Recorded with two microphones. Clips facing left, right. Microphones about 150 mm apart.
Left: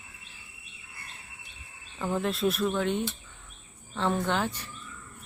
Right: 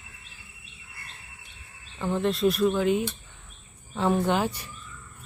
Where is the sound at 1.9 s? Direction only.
Centre (ahead or behind).